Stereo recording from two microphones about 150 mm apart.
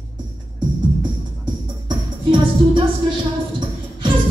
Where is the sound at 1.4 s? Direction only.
30° right (ahead or behind).